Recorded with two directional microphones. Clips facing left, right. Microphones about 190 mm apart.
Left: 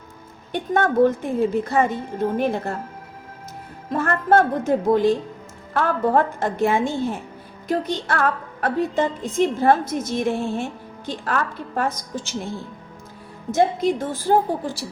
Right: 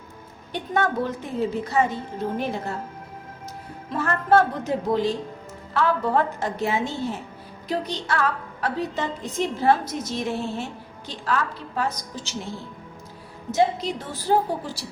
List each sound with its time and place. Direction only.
0.5 s a woman's voice: 50° left (ahead or behind)
3.8 s a woman's voice: 50° left (ahead or behind)
13.5 s a woman's voice: 50° left (ahead or behind)